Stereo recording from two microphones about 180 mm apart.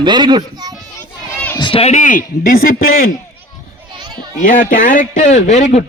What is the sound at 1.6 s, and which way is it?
A man's voice, 30° left (ahead or behind).